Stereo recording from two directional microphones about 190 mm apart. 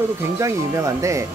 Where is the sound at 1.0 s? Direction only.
15° right (ahead or behind).